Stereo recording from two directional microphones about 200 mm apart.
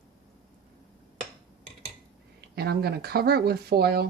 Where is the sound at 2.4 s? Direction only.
55° right (ahead or behind).